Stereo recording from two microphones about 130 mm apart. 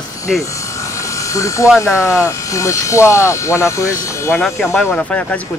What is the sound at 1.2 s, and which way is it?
Speech, 25° left (ahead or behind).